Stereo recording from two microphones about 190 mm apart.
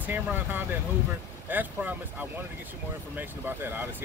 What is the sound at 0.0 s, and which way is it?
Speech, 10° right (ahead or behind).